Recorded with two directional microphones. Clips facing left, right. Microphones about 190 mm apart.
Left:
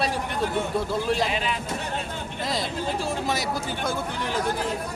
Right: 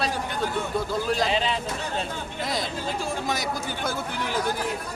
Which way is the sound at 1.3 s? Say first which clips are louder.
Right 3 dB; 30° right (ahead or behind).